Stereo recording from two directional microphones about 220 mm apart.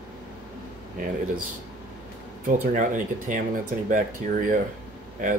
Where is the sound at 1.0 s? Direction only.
35° right (ahead or behind).